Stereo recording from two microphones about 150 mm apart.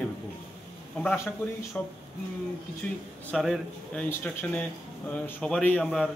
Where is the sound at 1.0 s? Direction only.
10° left (ahead or behind).